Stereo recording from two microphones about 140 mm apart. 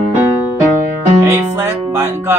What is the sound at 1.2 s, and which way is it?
Music, 20° right (ahead or behind).